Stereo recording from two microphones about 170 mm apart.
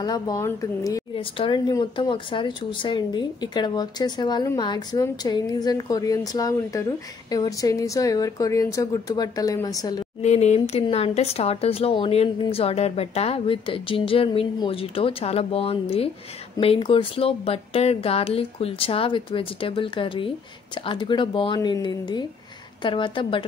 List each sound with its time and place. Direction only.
0.0 s speech: 25° left (ahead or behind)
1.1 s speech: 30° left (ahead or behind)
10.2 s speech: 40° left (ahead or behind)